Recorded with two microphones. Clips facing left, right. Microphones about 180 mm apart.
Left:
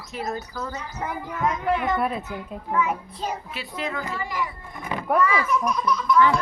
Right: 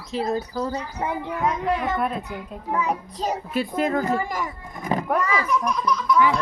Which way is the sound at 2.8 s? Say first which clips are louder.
Even; 40° right (ahead or behind).